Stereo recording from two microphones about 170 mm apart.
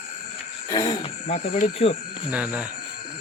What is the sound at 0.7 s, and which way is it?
Speech, 25° left (ahead or behind).